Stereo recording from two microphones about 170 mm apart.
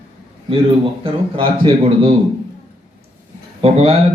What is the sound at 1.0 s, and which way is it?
A man's voice, 30° right (ahead or behind).